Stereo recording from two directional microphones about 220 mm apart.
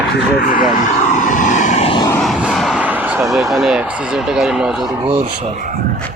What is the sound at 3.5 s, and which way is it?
Speech, centre (ahead or behind).